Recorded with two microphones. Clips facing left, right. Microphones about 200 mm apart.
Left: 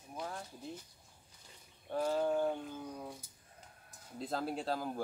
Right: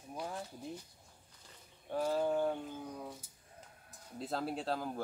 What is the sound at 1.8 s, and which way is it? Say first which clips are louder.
Speech: even; 5° right (ahead or behind).